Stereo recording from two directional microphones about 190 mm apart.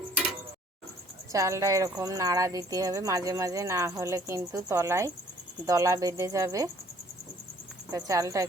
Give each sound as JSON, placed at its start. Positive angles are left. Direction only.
{"t": 1.3, "sound": "speech", "side_deg": -15}
{"t": 7.9, "sound": "speech", "side_deg": -15}